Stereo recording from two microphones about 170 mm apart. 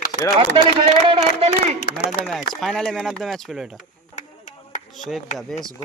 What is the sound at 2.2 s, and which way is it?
Speech, 70° left (ahead or behind).